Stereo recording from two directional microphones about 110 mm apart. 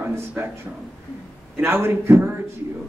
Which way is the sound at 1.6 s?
25° right (ahead or behind).